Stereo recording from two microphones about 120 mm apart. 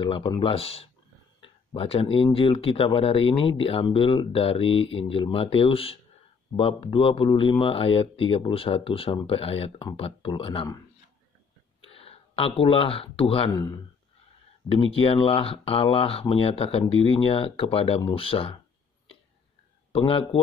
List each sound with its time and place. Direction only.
0.0 s speech: 40° left (ahead or behind)
11.8 s speech: 55° left (ahead or behind)
14.8 s speech: 50° left (ahead or behind)
19.9 s speech: 45° left (ahead or behind)